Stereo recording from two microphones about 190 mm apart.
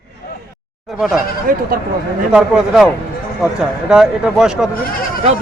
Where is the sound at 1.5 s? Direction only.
45° right (ahead or behind).